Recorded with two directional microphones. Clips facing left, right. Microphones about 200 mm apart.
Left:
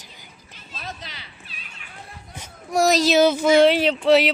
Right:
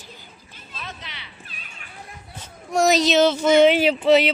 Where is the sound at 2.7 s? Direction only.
Centre (ahead or behind).